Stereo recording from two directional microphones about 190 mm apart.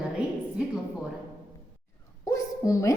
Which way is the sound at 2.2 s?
15° left (ahead or behind).